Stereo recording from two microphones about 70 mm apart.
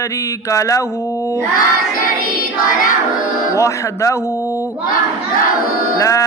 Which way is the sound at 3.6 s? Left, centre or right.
Left.